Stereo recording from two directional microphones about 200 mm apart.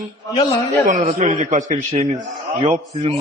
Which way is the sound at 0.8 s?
40° right (ahead or behind).